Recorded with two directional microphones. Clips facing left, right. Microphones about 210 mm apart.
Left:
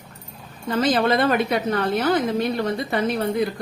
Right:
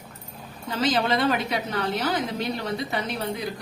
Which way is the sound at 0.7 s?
55° left (ahead or behind).